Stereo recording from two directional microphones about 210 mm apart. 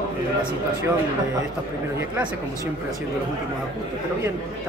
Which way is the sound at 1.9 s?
10° right (ahead or behind).